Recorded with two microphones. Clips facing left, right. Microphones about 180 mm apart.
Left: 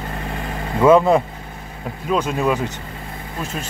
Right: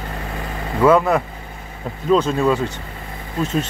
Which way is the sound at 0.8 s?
20° left (ahead or behind).